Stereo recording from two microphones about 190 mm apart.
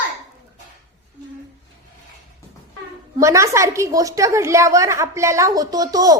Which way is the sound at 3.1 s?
15° right (ahead or behind).